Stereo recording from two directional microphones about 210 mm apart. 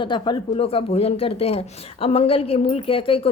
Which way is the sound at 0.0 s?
20° left (ahead or behind).